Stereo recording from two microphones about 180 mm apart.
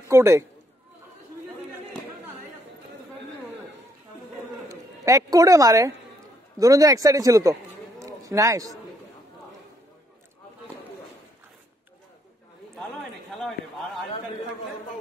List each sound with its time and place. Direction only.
0.1 s a man's voice: 15° right (ahead or behind)
4.6 s a man's voice: 20° right (ahead or behind)